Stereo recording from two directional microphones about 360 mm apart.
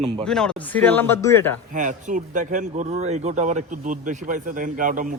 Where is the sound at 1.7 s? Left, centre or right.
Right.